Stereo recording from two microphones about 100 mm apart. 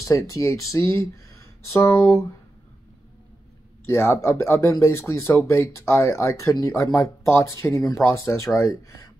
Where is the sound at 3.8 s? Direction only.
25° left (ahead or behind).